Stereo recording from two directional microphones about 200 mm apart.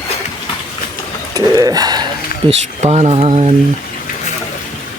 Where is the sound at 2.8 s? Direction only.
30° right (ahead or behind).